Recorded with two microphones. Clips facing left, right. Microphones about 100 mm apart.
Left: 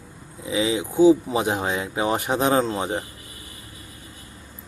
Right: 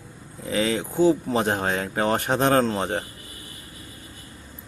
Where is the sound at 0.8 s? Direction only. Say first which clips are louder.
Left 7 dB; 10° left (ahead or behind).